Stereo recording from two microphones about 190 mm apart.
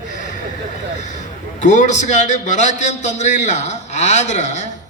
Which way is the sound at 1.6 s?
40° left (ahead or behind).